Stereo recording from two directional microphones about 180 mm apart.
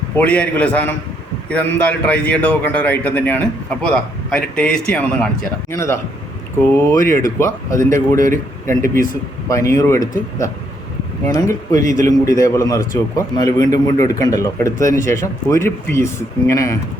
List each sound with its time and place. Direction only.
0.2 s a man's voice: 5° left (ahead or behind)
9.5 s a man's voice: 15° left (ahead or behind)